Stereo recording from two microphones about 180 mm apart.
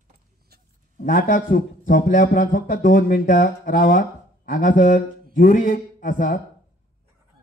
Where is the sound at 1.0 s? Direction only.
50° left (ahead or behind).